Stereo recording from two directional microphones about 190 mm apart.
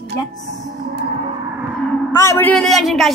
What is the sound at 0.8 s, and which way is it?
Gong, 65° right (ahead or behind).